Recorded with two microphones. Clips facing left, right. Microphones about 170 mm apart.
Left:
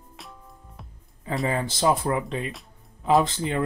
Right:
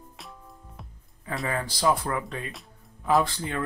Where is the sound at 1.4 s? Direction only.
20° left (ahead or behind).